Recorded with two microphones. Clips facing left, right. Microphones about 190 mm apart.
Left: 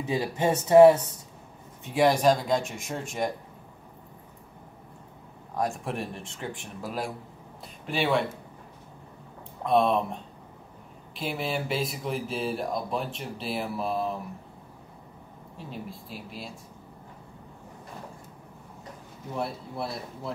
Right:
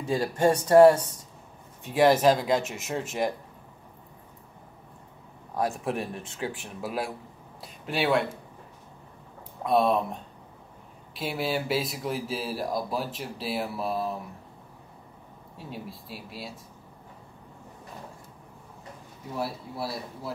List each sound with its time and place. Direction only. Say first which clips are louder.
0.0 s speech: right 3 dB; 5° left (ahead or behind)
1.9 s speech: right 1 dB; 5° right (ahead or behind)
5.6 s speech: right 1 dB; 5° right (ahead or behind)
9.6 s speech: even; 5° right (ahead or behind)
11.1 s speech: right 1 dB; centre (ahead or behind)
15.5 s speech: even; centre (ahead or behind)
19.3 s speech: even; 5° right (ahead or behind)